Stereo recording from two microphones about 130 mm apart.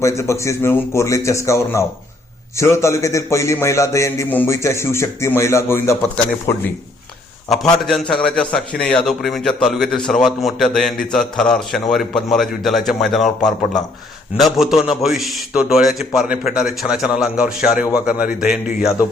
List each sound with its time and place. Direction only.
0.0 s a man's voice: 20° left (ahead or behind)
7.5 s a man's voice: centre (ahead or behind)